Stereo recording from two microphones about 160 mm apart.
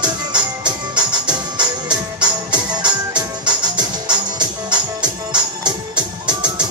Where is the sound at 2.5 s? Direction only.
25° right (ahead or behind).